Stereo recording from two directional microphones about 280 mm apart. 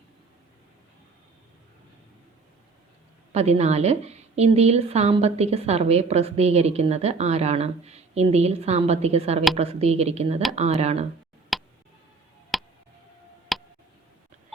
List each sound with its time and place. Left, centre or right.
3.3 s a woman's voice: right
11.5 s a sound: centre
13.5 s tick: centre